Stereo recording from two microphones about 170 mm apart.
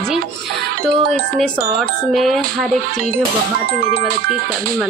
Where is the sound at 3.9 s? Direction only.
60° right (ahead or behind).